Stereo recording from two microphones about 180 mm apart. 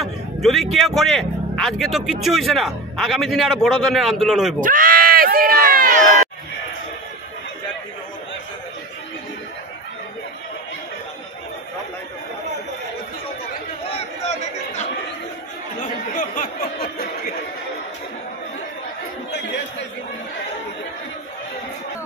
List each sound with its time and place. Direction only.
0.0 s speech: centre (ahead or behind)
4.6 s speech: 50° right (ahead or behind)
16.1 s a sound: 50° left (ahead or behind)